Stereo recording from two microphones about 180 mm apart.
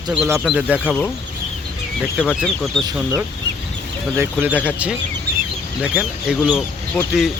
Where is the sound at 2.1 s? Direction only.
5° right (ahead or behind).